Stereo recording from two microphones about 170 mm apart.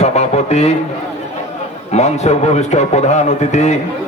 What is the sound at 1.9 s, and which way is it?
A man's voice, 40° left (ahead or behind).